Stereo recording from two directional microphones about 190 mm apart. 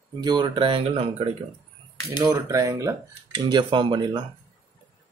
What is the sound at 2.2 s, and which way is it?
Speech, 20° right (ahead or behind).